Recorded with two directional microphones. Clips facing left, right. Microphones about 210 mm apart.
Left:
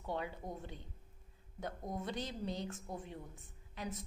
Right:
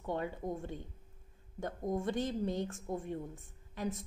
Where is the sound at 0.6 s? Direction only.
50° right (ahead or behind).